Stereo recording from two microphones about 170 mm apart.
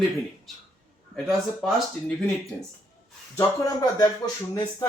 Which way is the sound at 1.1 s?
Centre (ahead or behind).